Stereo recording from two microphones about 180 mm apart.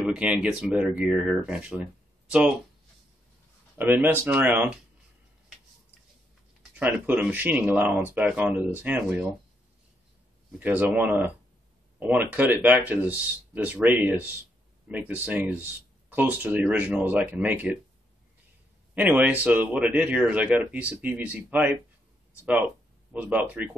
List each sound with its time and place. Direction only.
0.0 s speech: 5° right (ahead or behind)
3.7 s speech: 10° right (ahead or behind)
6.8 s speech: 10° right (ahead or behind)
10.6 s speech: 10° right (ahead or behind)
18.9 s speech: 5° right (ahead or behind)
23.1 s speech: 10° right (ahead or behind)